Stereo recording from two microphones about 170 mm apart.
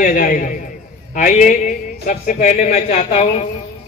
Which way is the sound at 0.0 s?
50° left (ahead or behind).